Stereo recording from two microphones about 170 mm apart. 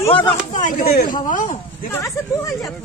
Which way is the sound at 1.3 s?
50° left (ahead or behind).